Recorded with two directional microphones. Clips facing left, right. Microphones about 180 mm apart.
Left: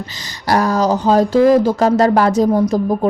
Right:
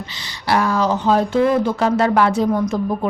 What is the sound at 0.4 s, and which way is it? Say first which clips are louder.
Speech: left 3 dB; 40° left (ahead or behind).